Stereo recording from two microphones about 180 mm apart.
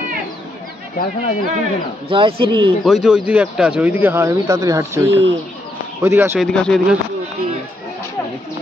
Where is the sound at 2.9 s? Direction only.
5° right (ahead or behind).